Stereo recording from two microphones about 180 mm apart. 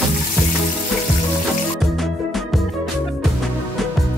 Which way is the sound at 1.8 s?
Centre (ahead or behind).